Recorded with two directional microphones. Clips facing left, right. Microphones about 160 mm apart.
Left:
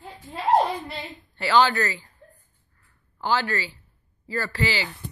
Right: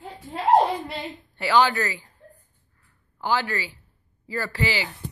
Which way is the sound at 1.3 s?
15° right (ahead or behind).